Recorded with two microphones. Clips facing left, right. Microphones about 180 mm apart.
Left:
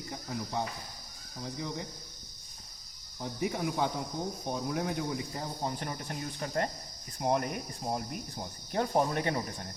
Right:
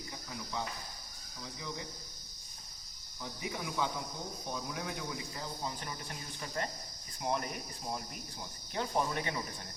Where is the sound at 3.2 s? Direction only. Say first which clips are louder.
Left 8 dB; 50° left (ahead or behind).